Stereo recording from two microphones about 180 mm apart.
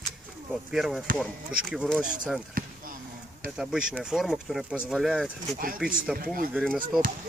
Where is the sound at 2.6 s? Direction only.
50° right (ahead or behind).